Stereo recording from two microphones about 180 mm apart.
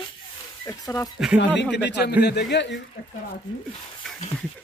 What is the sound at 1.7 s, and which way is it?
Speech, 70° left (ahead or behind).